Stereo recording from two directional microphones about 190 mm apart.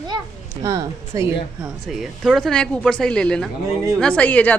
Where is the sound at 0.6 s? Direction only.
15° right (ahead or behind).